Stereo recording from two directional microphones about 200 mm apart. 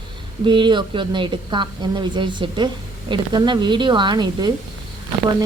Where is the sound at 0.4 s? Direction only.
25° right (ahead or behind).